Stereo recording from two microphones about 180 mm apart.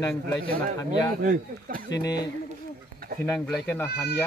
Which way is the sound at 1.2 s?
50° right (ahead or behind).